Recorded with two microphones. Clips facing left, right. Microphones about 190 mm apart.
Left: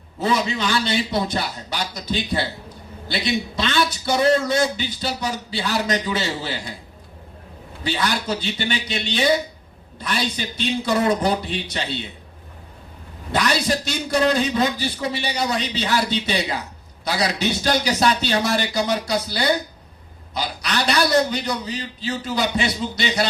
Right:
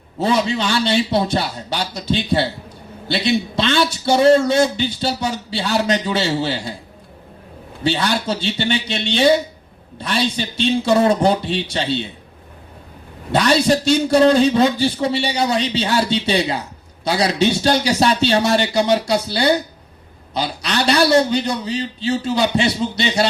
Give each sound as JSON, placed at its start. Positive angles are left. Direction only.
{"t": 0.2, "sound": "a man's voice", "side_deg": -30}
{"t": 7.9, "sound": "a man's voice", "side_deg": -30}
{"t": 13.3, "sound": "a man's voice", "side_deg": -30}